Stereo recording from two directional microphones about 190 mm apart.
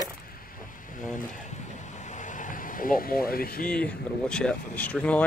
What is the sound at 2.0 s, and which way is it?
Vehicle, 40° left (ahead or behind).